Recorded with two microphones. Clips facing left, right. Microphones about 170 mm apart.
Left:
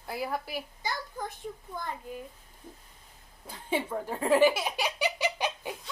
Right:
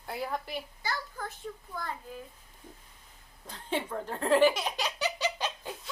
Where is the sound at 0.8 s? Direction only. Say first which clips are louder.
Left 2 dB; 20° left (ahead or behind).